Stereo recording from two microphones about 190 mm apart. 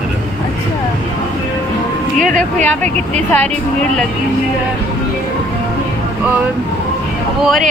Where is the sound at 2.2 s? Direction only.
45° right (ahead or behind).